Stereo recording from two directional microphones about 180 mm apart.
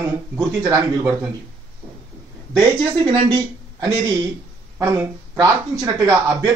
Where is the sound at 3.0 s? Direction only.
25° right (ahead or behind).